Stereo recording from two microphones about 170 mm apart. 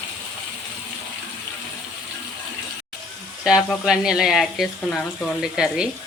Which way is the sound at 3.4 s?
Centre (ahead or behind).